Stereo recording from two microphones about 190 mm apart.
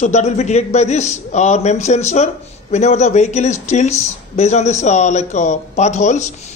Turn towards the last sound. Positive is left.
turn(degrees=35)  # may be behind; listen again after turning